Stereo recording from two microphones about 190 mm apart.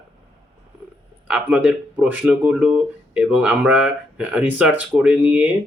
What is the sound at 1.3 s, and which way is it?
Speech, 5° right (ahead or behind).